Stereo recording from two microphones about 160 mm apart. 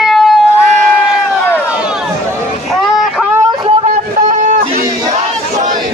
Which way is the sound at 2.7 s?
Centre (ahead or behind).